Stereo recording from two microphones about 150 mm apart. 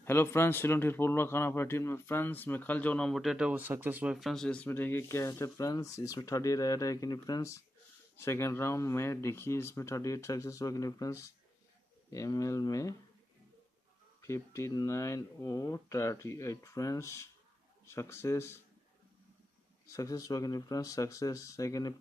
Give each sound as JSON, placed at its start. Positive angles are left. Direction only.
{"t": 0.0, "sound": "a man's voice", "side_deg": 15}
{"t": 14.2, "sound": "a man's voice", "side_deg": 20}
{"t": 19.9, "sound": "speech", "side_deg": 20}